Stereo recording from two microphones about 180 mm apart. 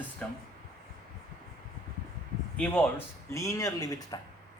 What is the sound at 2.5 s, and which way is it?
Speech, 5° left (ahead or behind).